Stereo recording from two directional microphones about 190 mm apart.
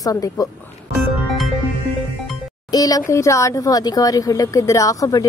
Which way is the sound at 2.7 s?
20° left (ahead or behind).